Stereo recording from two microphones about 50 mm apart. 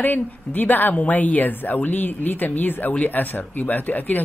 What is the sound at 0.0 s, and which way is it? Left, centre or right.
A woman's voice, left.